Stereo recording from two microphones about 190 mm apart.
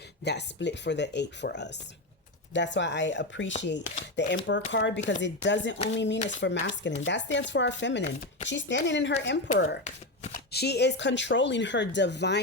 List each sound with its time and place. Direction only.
0.3 s speech: 65° left (ahead or behind)
9.6 s shuffling cards: 40° left (ahead or behind)
10.5 s speech: 60° left (ahead or behind)